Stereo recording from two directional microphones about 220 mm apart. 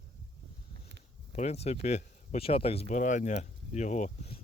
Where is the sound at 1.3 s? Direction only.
30° left (ahead or behind).